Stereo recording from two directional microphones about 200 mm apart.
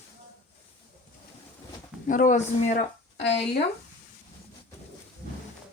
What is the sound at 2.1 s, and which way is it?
A man's voice, 40° left (ahead or behind).